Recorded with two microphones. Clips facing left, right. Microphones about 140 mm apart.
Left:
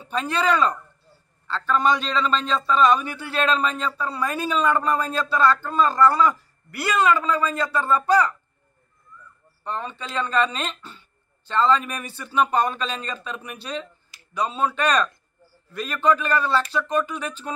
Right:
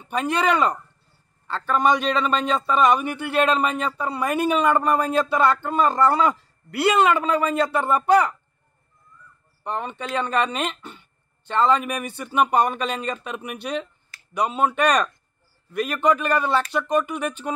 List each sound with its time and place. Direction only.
0.1 s speech: 15° right (ahead or behind)
9.6 s speech: 15° right (ahead or behind)